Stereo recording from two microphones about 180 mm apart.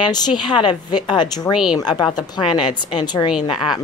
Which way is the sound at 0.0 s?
20° left (ahead or behind).